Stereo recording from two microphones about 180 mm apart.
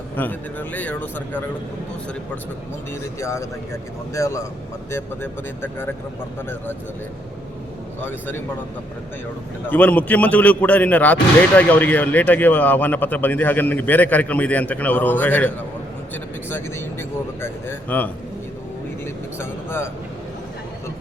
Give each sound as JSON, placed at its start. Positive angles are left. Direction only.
{"t": 0.2, "sound": "speech", "side_deg": 10}
{"t": 3.0, "sound": "speech", "side_deg": 15}
{"t": 8.0, "sound": "speech", "side_deg": 10}
{"t": 9.6, "sound": "speech", "side_deg": 10}
{"t": 19.4, "sound": "speech", "side_deg": 15}